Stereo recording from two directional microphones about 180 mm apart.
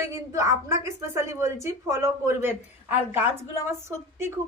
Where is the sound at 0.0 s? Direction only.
15° right (ahead or behind).